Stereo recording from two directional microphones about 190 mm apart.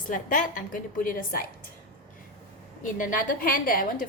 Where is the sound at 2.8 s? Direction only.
45° left (ahead or behind).